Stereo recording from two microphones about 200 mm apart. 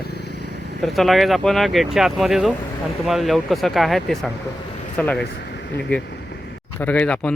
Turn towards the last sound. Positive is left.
turn(degrees=5)  # may be behind; listen again after turning